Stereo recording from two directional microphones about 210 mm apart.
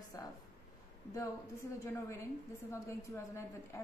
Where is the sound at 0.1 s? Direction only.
15° left (ahead or behind).